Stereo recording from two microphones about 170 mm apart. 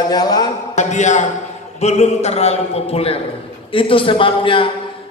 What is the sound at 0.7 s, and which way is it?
A man's voice, 45° left (ahead or behind).